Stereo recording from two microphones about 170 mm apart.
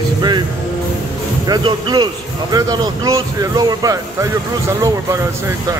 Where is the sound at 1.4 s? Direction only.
25° right (ahead or behind).